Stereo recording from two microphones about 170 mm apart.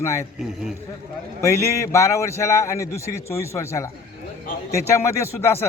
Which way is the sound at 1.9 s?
15° left (ahead or behind).